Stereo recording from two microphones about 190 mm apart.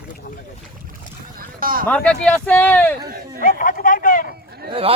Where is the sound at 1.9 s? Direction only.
5° left (ahead or behind).